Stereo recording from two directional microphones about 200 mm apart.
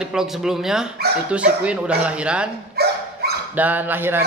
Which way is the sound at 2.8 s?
50° right (ahead or behind).